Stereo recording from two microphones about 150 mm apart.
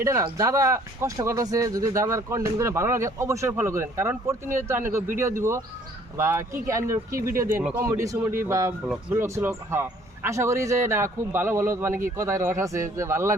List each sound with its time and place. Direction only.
0.0 s a man's voice: 20° right (ahead or behind)